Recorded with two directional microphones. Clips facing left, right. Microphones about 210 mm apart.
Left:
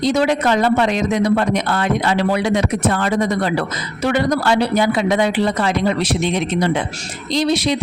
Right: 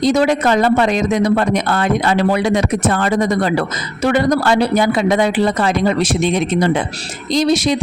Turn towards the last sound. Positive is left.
turn(degrees=-45)  # may be behind; listen again after turning